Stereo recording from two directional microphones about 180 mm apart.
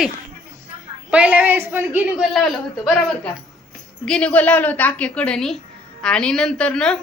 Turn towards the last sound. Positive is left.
turn(degrees=5)  # may be behind; listen again after turning